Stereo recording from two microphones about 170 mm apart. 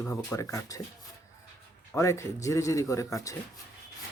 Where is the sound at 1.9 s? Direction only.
15° left (ahead or behind).